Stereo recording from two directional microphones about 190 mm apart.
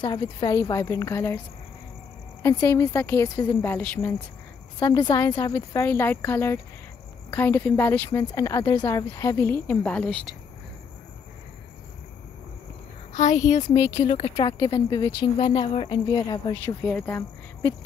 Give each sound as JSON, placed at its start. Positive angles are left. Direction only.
{"t": 0.0, "sound": "speech", "side_deg": 25}
{"t": 2.4, "sound": "speech", "side_deg": 15}
{"t": 4.7, "sound": "speech", "side_deg": 20}
{"t": 13.1, "sound": "speech", "side_deg": 40}
{"t": 14.3, "sound": "a woman's voice", "side_deg": 25}
{"t": 16.8, "sound": "speech", "side_deg": 10}